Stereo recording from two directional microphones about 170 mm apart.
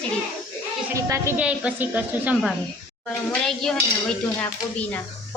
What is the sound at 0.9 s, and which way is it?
A woman's voice, 20° right (ahead or behind).